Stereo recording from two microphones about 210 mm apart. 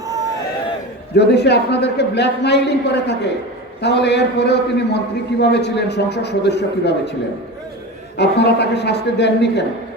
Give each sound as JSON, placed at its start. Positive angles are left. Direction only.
{"t": 1.1, "sound": "a man's voice", "side_deg": 55}
{"t": 8.2, "sound": "a man's voice", "side_deg": 55}